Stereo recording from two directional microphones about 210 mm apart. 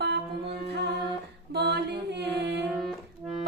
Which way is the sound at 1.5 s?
55° right (ahead or behind).